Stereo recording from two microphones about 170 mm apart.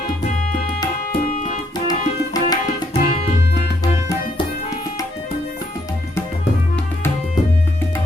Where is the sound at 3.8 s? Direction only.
20° left (ahead or behind).